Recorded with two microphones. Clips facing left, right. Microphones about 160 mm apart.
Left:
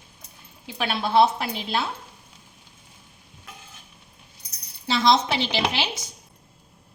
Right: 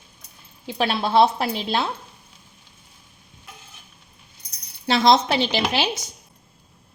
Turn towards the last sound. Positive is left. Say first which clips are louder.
# right 3 dB
turn(degrees=-45)  # may be behind; listen again after turning